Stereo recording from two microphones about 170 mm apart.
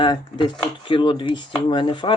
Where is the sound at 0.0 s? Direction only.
30° left (ahead or behind).